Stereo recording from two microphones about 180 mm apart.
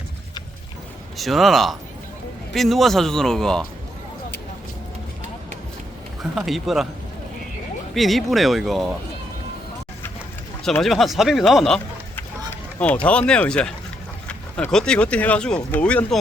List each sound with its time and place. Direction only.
1.1 s a man's voice: centre (ahead or behind)
6.3 s a man's voice: centre (ahead or behind)
7.9 s a man's voice: centre (ahead or behind)
10.6 s speech: centre (ahead or behind)